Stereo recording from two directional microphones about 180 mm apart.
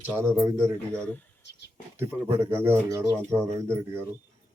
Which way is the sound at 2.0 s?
15° right (ahead or behind).